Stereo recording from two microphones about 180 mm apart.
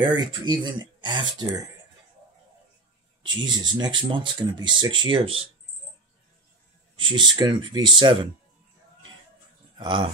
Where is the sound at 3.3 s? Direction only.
25° right (ahead or behind).